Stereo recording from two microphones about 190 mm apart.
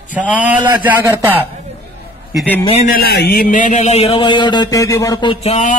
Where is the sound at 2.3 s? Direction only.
10° left (ahead or behind).